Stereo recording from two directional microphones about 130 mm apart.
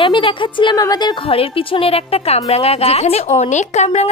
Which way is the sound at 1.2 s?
45° left (ahead or behind).